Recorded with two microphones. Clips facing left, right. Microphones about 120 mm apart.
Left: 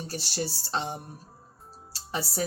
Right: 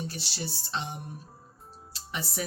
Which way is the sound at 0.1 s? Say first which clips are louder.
Left 5 dB; 40° left (ahead or behind).